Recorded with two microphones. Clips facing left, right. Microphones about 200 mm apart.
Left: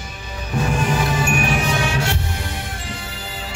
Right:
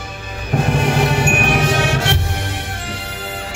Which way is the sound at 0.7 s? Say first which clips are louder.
Right 4 dB; 70° right (ahead or behind).